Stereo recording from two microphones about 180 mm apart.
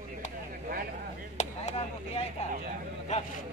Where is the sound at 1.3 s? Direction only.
40° left (ahead or behind).